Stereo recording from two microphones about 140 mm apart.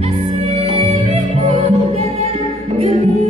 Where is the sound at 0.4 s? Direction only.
45° right (ahead or behind).